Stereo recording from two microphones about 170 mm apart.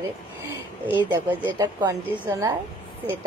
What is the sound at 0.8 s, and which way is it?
Speech, 10° right (ahead or behind).